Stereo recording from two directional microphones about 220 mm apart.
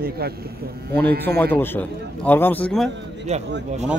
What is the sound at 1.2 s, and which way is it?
A man's voice, 10° left (ahead or behind).